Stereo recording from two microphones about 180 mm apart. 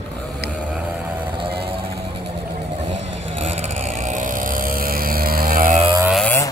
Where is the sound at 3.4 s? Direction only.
40° right (ahead or behind).